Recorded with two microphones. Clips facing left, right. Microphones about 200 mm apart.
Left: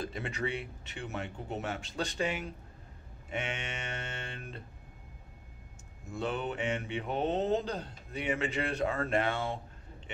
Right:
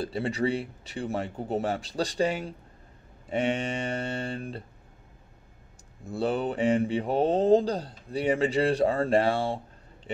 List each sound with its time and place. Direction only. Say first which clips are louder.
0.0 s speech: right 8 dB; 35° right (ahead or behind)
6.0 s speech: right 7 dB; 35° right (ahead or behind)